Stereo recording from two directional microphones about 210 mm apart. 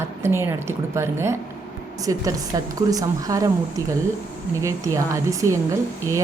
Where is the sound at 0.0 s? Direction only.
10° right (ahead or behind).